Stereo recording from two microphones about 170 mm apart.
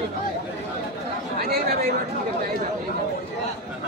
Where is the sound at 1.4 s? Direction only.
60° right (ahead or behind).